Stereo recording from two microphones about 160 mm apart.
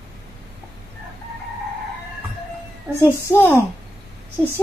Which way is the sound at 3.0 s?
15° left (ahead or behind).